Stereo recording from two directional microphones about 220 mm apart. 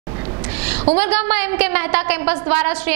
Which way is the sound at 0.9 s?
10° right (ahead or behind).